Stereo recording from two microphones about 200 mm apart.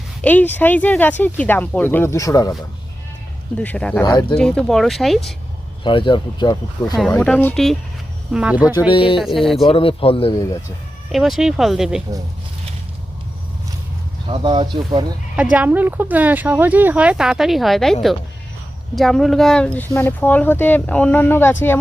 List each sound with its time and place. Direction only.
0.2 s speech: 10° left (ahead or behind)
3.6 s speech: 5° left (ahead or behind)
4.0 s speech: 20° left (ahead or behind)
4.4 s speech: 5° left (ahead or behind)
5.8 s speech: 25° left (ahead or behind)
7.1 s speech: 5° left (ahead or behind)
8.9 s speech: 25° left (ahead or behind)
9.1 s speech: centre (ahead or behind)
9.6 s speech: 25° left (ahead or behind)
11.1 s speech: centre (ahead or behind)
14.3 s speech: 25° right (ahead or behind)
15.5 s speech: 10° right (ahead or behind)
18.9 s speech: centre (ahead or behind)